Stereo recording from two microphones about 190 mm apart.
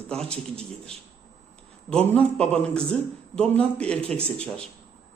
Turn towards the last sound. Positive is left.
turn(degrees=5)  # may be behind; listen again after turning